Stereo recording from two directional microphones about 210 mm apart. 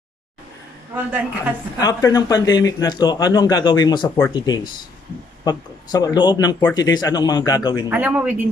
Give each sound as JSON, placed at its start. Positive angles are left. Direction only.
{"t": 0.9, "sound": "a woman's voice", "side_deg": -10}
{"t": 1.8, "sound": "speech", "side_deg": 15}
{"t": 7.9, "sound": "speech", "side_deg": -5}